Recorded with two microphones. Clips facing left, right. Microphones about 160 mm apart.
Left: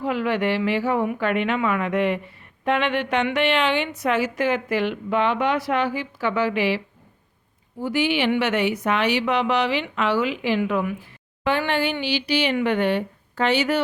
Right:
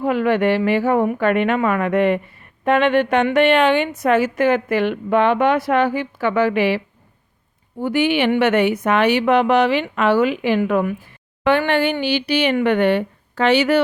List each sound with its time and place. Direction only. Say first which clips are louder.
0.0 s a woman's voice: right 6 dB; 50° right (ahead or behind)
11.4 s speech: right 6 dB; 60° right (ahead or behind)